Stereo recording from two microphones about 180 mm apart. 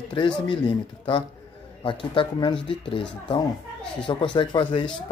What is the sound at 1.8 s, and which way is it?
Speech, 30° left (ahead or behind).